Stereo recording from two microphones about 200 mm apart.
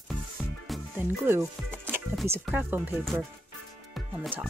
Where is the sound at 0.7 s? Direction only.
10° right (ahead or behind).